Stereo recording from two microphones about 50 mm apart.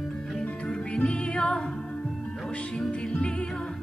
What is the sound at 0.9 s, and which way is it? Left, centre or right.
Music, left.